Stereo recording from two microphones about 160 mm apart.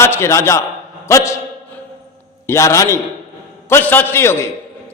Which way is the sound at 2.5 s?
20° left (ahead or behind).